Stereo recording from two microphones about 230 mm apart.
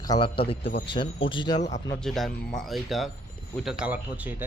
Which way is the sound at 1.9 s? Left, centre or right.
Centre.